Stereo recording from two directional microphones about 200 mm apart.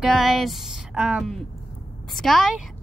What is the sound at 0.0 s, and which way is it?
A woman's voice, centre (ahead or behind).